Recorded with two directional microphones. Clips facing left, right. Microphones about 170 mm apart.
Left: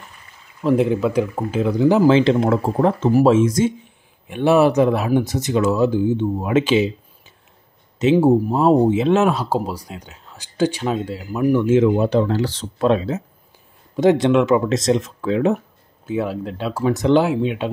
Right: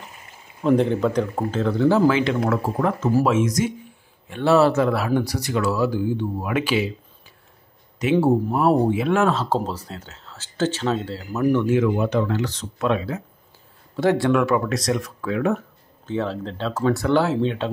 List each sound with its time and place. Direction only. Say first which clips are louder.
0.7 s speech: left 1 dB; 5° left (ahead or behind)
2.0 s speech: left 5 dB; 30° left (ahead or behind)
4.3 s speech: left 2 dB; 15° left (ahead or behind)
8.0 s speech: left 4 dB; 20° left (ahead or behind)
11.7 s speech: left 4 dB; 25° left (ahead or behind)
16.1 s speech: left 3 dB; 10° left (ahead or behind)